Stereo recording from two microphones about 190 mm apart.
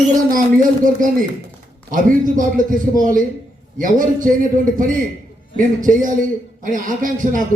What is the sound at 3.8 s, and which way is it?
A man's voice, 45° right (ahead or behind).